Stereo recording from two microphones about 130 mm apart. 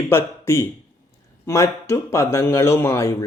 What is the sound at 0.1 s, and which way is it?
Speech, 20° left (ahead or behind).